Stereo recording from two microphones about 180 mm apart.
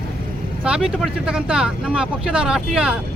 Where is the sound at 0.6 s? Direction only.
5° right (ahead or behind).